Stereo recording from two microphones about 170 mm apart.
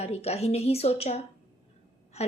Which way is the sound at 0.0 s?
35° left (ahead or behind).